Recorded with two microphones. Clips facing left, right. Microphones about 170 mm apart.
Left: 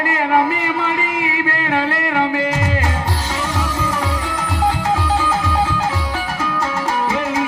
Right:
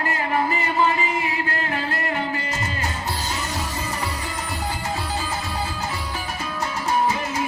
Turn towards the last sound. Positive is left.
turn(degrees=90)